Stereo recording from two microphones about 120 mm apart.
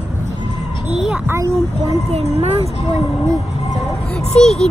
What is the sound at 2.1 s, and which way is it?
Speech, 60° right (ahead or behind).